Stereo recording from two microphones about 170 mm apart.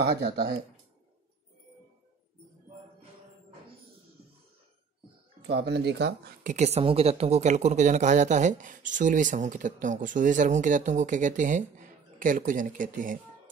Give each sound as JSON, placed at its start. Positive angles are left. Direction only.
{"t": 5.5, "sound": "speech", "side_deg": -75}
{"t": 6.4, "sound": "speech", "side_deg": -45}